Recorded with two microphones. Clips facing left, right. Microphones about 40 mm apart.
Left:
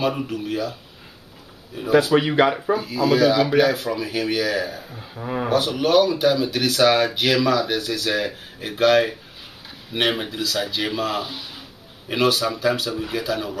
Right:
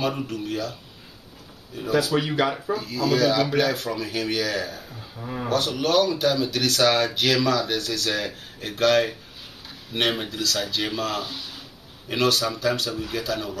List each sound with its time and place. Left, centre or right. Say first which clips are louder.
0.0 s speech: left 3 dB; centre
1.8 s speech: left 5 dB; centre
5.1 s a man's voice: left 6 dB; left
5.5 s speech: left 3 dB; centre